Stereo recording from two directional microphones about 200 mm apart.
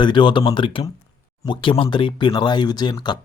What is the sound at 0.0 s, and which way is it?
Speech, 25° left (ahead or behind).